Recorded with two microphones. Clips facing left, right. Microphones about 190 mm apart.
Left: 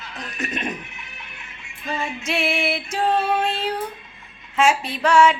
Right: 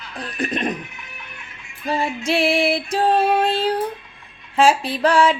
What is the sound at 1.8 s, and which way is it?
Female singing, 35° right (ahead or behind).